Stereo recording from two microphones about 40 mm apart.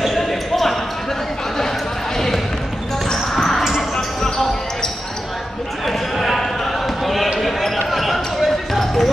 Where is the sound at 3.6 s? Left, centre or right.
Centre.